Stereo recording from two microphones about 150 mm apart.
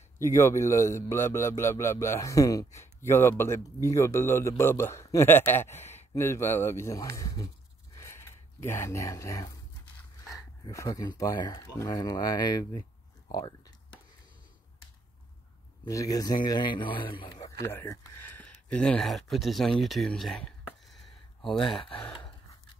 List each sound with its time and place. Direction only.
0.2 s speech: 20° left (ahead or behind)
5.7 s a sound: 50° left (ahead or behind)
6.1 s speech: 15° left (ahead or behind)
9.9 s dog: 20° left (ahead or behind)
10.7 s speech: 20° left (ahead or behind)
13.3 s a sound: 25° left (ahead or behind)
15.8 s a man's voice: 20° left (ahead or behind)
17.6 s speech: 20° left (ahead or behind); by 21.5 s centre (ahead or behind)
21.5 s a man's voice: 35° left (ahead or behind)